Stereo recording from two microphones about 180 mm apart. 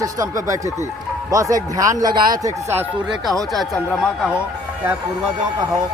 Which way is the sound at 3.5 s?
Centre (ahead or behind).